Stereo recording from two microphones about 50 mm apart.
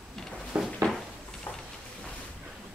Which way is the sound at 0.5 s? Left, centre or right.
Centre.